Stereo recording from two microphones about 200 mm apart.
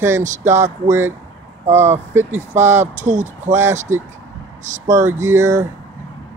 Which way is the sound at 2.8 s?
35° right (ahead or behind).